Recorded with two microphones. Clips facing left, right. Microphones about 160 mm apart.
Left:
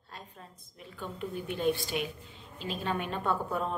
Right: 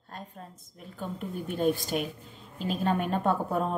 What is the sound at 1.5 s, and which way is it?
Speech, 45° right (ahead or behind).